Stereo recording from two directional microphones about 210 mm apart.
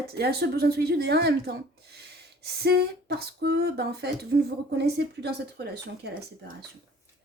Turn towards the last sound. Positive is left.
turn(degrees=-50)  # may be behind; listen again after turning